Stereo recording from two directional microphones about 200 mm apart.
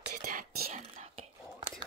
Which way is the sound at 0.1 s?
40° right (ahead or behind).